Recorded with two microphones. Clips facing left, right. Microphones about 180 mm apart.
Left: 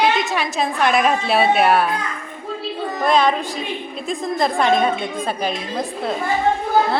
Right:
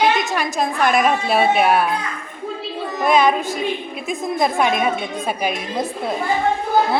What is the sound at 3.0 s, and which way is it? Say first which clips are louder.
A woman's voice: right 1 dB; 5° right (ahead or behind).